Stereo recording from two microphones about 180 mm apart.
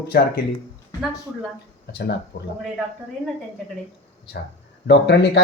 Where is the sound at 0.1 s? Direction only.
55° left (ahead or behind).